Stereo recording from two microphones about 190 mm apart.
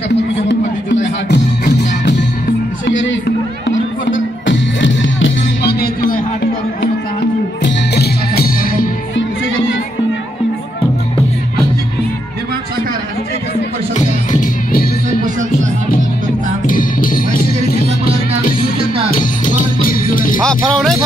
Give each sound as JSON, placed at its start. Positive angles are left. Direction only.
{"t": 0.1, "sound": "music", "side_deg": 65}
{"t": 2.9, "sound": "music", "side_deg": 80}
{"t": 7.6, "sound": "music", "side_deg": 60}
{"t": 13.9, "sound": "music", "side_deg": 50}
{"t": 16.6, "sound": "music", "side_deg": 45}
{"t": 19.0, "sound": "music", "side_deg": 45}
{"t": 20.4, "sound": "music", "side_deg": 0}